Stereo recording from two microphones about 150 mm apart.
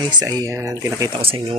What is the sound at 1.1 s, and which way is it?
Speech, 35° right (ahead or behind).